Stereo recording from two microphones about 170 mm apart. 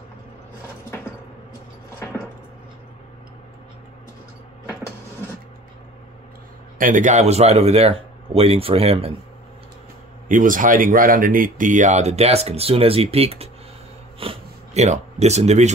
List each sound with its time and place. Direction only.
0.8 s a sound: 15° left (ahead or behind)
6.8 s speech: 50° right (ahead or behind)
10.2 s speech: 50° right (ahead or behind)